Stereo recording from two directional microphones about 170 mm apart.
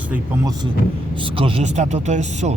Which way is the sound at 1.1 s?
30° right (ahead or behind).